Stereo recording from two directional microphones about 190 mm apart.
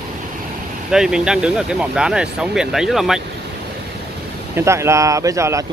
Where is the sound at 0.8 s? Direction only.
5° right (ahead or behind).